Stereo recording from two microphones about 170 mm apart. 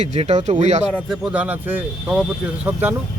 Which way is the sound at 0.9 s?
Centre (ahead or behind).